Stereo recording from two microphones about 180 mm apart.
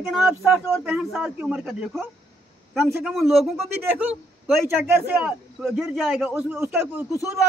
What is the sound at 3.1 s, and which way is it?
Speech, centre (ahead or behind).